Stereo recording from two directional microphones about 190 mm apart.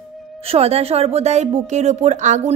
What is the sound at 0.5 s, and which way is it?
A woman's voice, 30° right (ahead or behind).